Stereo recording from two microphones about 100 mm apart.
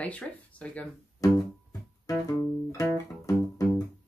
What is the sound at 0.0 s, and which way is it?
Speech, 15° left (ahead or behind).